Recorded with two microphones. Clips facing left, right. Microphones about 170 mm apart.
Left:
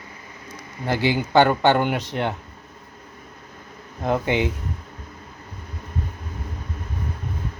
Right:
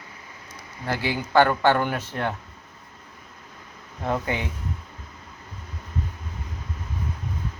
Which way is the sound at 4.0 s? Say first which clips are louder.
Left 5 dB; 20° left (ahead or behind).